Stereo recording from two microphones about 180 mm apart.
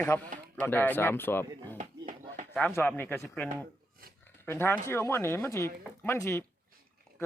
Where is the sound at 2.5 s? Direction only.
10° left (ahead or behind).